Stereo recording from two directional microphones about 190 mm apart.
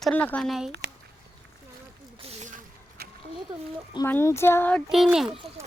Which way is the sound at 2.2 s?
40° right (ahead or behind).